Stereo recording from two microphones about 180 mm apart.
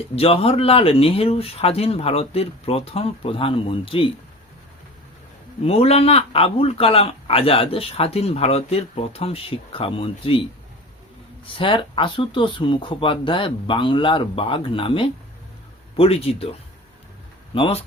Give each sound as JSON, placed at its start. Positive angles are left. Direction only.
{"t": 0.2, "sound": "a man's voice", "side_deg": 35}
{"t": 5.6, "sound": "a man's voice", "side_deg": 35}
{"t": 11.4, "sound": "a man's voice", "side_deg": 30}
{"t": 17.5, "sound": "speech", "side_deg": 30}